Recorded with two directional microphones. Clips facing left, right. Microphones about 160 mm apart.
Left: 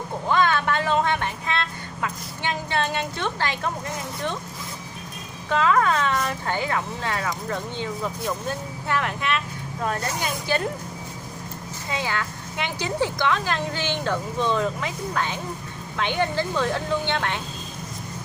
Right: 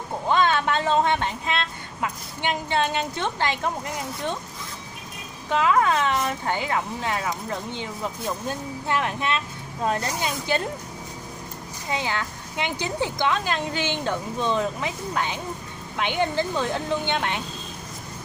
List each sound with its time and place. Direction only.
0.3 s speech: 20° right (ahead or behind)
5.5 s speech: 20° right (ahead or behind)
8.8 s a woman's voice: 20° right (ahead or behind)
11.9 s a woman's voice: 20° right (ahead or behind)